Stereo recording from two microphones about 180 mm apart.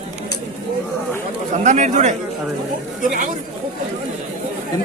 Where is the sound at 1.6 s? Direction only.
40° right (ahead or behind).